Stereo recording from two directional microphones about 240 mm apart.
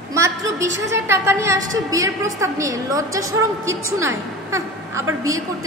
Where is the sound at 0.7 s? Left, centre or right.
Right.